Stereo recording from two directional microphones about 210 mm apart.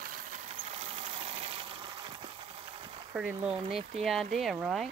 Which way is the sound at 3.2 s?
5° right (ahead or behind).